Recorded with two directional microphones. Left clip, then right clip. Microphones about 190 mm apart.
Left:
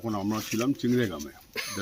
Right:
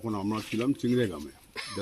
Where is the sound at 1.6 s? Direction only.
50° left (ahead or behind).